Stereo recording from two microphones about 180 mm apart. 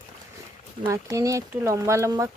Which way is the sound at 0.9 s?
15° right (ahead or behind).